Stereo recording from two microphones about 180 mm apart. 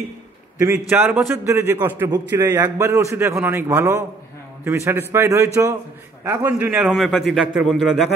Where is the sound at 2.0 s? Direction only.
20° right (ahead or behind); by 8.0 s centre (ahead or behind).